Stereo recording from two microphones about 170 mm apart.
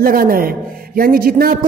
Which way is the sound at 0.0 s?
55° right (ahead or behind).